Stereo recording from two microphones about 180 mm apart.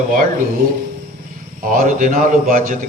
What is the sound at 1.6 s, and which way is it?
A man's voice, 50° right (ahead or behind).